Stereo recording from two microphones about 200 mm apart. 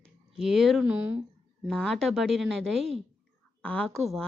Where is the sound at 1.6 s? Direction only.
5° left (ahead or behind).